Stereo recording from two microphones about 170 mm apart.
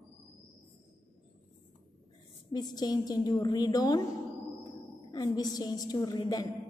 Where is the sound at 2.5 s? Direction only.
25° left (ahead or behind).